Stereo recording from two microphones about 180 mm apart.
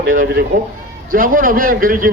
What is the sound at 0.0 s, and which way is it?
A man's voice, 50° right (ahead or behind).